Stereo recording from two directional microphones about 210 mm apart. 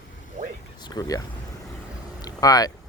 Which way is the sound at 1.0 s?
15° left (ahead or behind).